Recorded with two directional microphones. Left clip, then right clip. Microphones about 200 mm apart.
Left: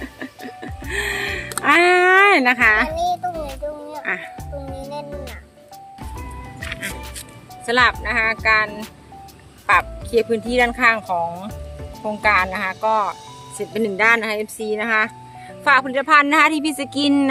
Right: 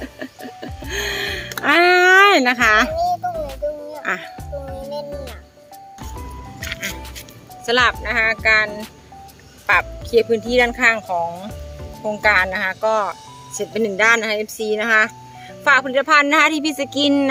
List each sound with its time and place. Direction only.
0.0 s music: 5° right (ahead or behind)
1.6 s a sound: 10° right (ahead or behind)
3.4 s music: centre (ahead or behind)
4.0 s a child's voice: 20° right (ahead or behind)
4.6 s music: centre (ahead or behind)
6.6 s music: 10° right (ahead or behind)
7.6 s speech: 5° right (ahead or behind)